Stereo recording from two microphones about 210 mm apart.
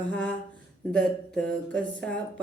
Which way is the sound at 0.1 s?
5° left (ahead or behind).